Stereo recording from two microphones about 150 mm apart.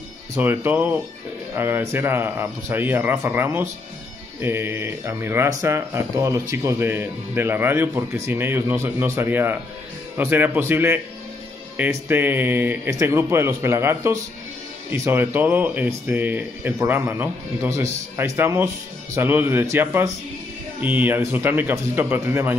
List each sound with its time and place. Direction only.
0.4 s speech: 15° right (ahead or behind)